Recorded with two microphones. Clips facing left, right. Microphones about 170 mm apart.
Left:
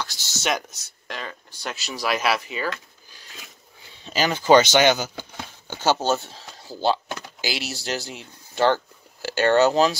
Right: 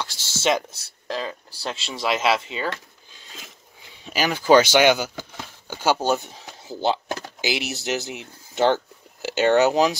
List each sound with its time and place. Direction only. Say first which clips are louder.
0.0 s speech: right 4 dB; 30° right (ahead or behind)
4.0 s speech: even; 10° right (ahead or behind)